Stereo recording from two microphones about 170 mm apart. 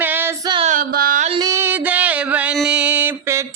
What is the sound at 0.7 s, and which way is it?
Music, 55° right (ahead or behind).